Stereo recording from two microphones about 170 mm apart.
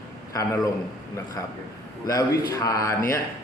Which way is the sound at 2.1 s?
20° left (ahead or behind).